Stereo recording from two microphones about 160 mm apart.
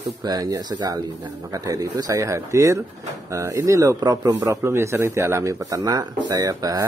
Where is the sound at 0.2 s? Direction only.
25° right (ahead or behind).